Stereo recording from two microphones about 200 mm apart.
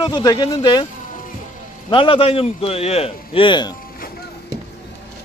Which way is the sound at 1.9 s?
25° left (ahead or behind).